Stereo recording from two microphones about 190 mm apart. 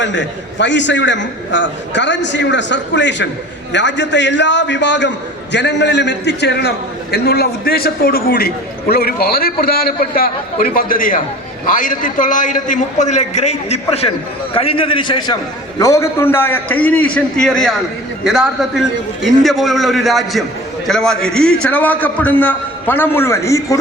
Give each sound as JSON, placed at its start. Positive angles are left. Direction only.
{"t": 0.0, "sound": "a man's voice", "side_deg": 70}
{"t": 15.8, "sound": "a man's voice", "side_deg": 15}